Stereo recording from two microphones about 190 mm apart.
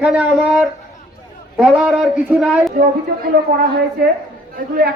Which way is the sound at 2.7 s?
45° right (ahead or behind).